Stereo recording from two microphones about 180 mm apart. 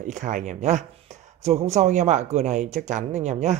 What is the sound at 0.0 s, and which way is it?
Speech, 45° right (ahead or behind).